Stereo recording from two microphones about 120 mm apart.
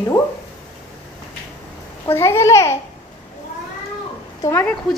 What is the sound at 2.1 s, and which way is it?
Speech, 20° left (ahead or behind).